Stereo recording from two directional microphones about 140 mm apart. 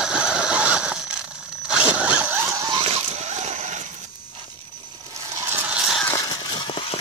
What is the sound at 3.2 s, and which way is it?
Vehicle, 55° right (ahead or behind).